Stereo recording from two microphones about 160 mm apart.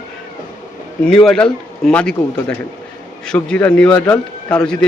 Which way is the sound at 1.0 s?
5° left (ahead or behind).